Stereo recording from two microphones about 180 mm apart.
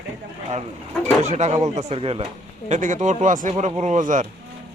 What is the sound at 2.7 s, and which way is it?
Speech, 45° right (ahead or behind).